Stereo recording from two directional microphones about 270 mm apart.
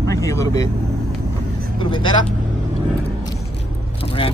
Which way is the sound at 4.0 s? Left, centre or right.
Centre.